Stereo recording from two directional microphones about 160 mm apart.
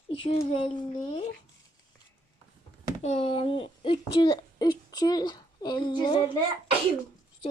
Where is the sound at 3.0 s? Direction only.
40° left (ahead or behind).